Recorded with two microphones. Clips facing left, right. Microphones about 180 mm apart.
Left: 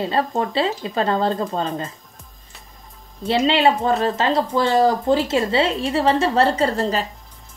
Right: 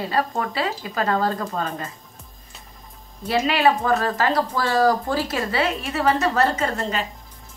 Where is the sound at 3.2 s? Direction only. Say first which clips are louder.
Left 2 dB; 25° left (ahead or behind).